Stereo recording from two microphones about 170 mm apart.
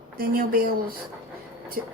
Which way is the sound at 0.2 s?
60° right (ahead or behind).